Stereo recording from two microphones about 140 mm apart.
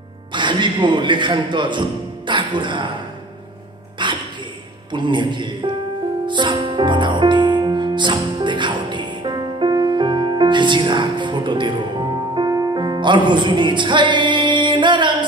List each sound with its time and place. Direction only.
0.3 s a man's voice: 35° right (ahead or behind)
4.0 s music: 35° right (ahead or behind)
4.9 s a man's voice: 35° right (ahead or behind)
6.2 s music: 35° right (ahead or behind)